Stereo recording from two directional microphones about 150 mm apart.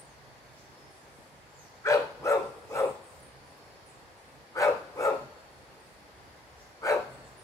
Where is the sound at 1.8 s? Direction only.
20° left (ahead or behind).